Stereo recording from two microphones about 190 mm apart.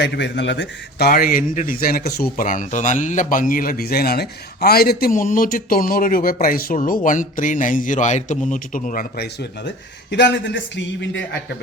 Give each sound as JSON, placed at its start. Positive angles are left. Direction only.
{"t": 0.0, "sound": "speech", "side_deg": 65}
{"t": 2.3, "sound": "a man's voice", "side_deg": 45}